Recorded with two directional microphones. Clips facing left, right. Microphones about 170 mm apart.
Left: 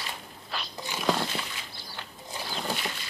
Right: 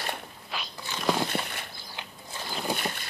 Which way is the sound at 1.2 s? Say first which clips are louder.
Right 3 dB; 55° right (ahead or behind).